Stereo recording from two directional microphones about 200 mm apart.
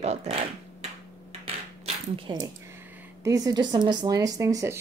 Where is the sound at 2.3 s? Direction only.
25° right (ahead or behind).